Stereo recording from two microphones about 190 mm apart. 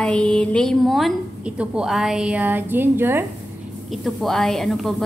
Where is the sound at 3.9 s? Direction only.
Centre (ahead or behind).